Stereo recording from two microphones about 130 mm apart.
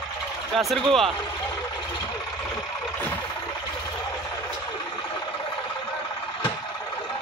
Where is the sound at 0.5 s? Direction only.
Centre (ahead or behind).